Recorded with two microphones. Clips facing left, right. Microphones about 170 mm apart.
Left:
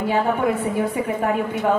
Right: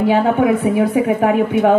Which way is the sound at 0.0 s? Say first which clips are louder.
Right 6 dB; 75° right (ahead or behind).